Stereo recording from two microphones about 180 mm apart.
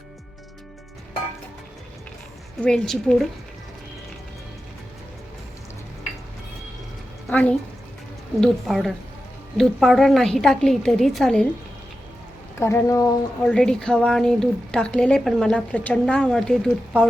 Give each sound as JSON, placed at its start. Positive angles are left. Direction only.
{"t": 2.6, "sound": "a woman's voice", "side_deg": 5}
{"t": 7.3, "sound": "a woman's voice", "side_deg": 10}
{"t": 12.5, "sound": "speech", "side_deg": 15}
{"t": 13.4, "sound": "a woman's voice", "side_deg": 5}